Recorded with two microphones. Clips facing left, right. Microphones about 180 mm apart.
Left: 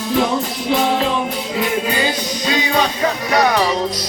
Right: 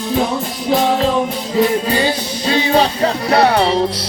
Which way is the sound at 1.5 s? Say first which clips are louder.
Right 5 dB; 30° right (ahead or behind).